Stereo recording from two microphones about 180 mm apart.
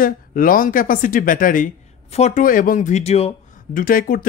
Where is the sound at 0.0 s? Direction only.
50° left (ahead or behind).